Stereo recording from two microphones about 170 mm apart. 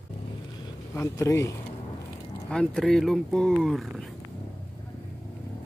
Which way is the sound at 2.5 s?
5° left (ahead or behind).